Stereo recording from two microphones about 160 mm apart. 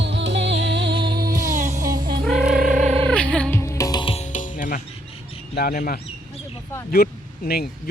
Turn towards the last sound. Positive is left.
turn(degrees=75)  # may be behind; listen again after turning